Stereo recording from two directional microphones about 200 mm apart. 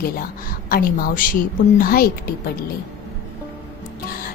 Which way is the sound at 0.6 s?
45° left (ahead or behind).